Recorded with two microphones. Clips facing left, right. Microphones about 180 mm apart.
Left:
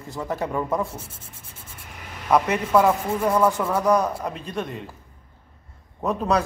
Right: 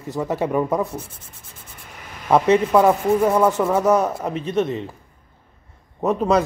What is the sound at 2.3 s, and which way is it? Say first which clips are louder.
Rub: right 4 dB; 20° right (ahead or behind).